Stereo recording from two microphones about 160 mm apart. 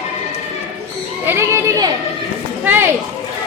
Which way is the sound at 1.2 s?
15° right (ahead or behind).